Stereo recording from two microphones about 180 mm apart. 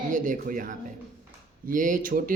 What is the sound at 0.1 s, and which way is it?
A man's voice, 50° right (ahead or behind).